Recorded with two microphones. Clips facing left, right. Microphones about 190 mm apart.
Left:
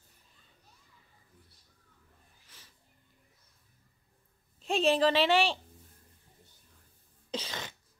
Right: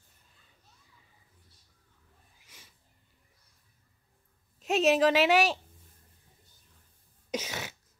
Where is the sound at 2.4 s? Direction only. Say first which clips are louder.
Right 4 dB; 10° right (ahead or behind).